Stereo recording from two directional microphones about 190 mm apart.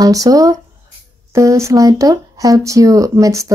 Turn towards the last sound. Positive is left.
turn(degrees=-15)  # may be behind; listen again after turning